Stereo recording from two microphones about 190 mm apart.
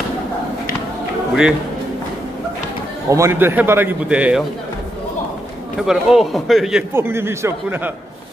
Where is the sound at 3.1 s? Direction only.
15° right (ahead or behind).